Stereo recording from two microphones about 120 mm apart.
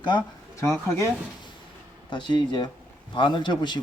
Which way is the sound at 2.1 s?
40° left (ahead or behind).